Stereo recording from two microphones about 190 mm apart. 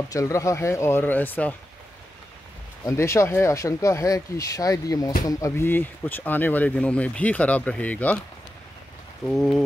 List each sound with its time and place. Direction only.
0.1 s speech: 15° left (ahead or behind)
2.8 s speech: 15° left (ahead or behind)
9.3 s speech: centre (ahead or behind)